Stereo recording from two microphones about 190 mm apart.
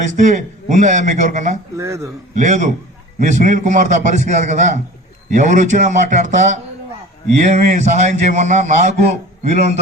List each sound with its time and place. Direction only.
0.1 s a man's voice: 40° right (ahead or behind)
1.7 s a man's voice: 15° right (ahead or behind)
2.3 s a man's voice: 40° right (ahead or behind)